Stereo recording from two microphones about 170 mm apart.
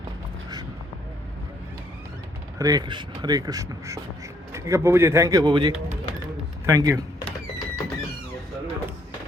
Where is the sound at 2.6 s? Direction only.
20° right (ahead or behind).